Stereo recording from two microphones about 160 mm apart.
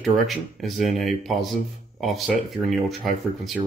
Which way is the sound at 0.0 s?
Centre (ahead or behind).